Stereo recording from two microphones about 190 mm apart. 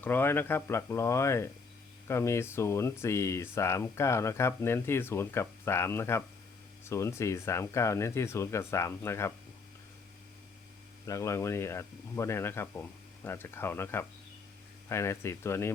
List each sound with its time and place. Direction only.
0.0 s speech: 10° left (ahead or behind)
11.0 s speech: 15° left (ahead or behind)